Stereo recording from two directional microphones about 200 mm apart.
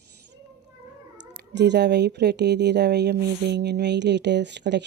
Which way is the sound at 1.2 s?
60° right (ahead or behind).